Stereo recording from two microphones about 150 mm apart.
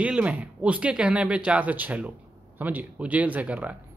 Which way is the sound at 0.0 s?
10° right (ahead or behind).